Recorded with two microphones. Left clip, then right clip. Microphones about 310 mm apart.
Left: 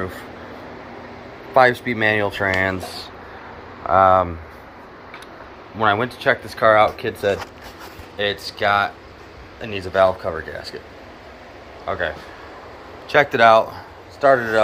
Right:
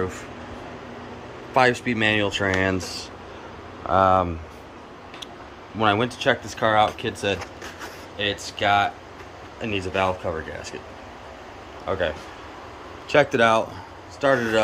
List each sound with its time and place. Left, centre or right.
1.5 s speech: centre
3.8 s speech: centre
5.8 s speech: centre
8.2 s speech: centre
11.8 s speech: centre
13.1 s speech: centre